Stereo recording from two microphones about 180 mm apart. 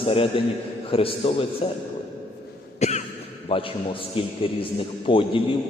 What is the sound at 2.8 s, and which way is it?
Cough, 40° left (ahead or behind).